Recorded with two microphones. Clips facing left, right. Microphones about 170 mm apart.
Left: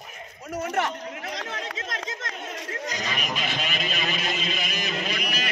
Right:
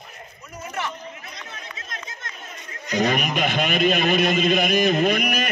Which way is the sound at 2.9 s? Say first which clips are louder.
Right 13 dB; 55° right (ahead or behind).